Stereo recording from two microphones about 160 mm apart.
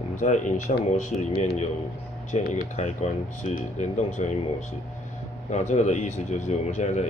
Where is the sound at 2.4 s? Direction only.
65° left (ahead or behind).